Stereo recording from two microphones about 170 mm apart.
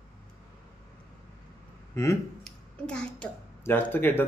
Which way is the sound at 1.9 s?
15° left (ahead or behind).